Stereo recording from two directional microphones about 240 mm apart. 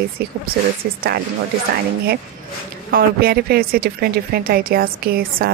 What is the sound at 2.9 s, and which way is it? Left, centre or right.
A woman's voice, right.